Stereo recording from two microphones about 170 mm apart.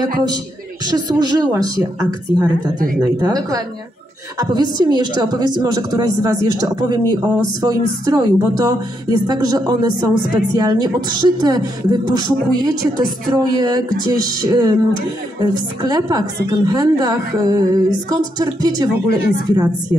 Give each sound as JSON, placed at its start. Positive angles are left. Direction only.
{"t": 0.8, "sound": "a woman's voice", "side_deg": -25}